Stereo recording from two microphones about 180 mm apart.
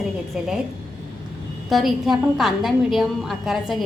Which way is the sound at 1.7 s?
Centre (ahead or behind).